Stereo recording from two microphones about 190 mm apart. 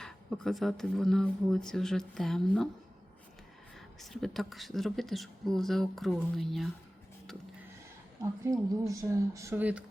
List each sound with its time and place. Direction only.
0.0 s a woman's voice: centre (ahead or behind)
3.8 s a woman's voice: centre (ahead or behind)
8.8 s speech: 15° right (ahead or behind)